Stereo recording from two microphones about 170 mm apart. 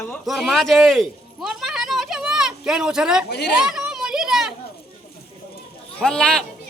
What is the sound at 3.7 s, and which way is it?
Children playing, 5° right (ahead or behind).